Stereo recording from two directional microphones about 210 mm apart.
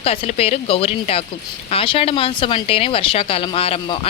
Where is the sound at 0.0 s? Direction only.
30° left (ahead or behind).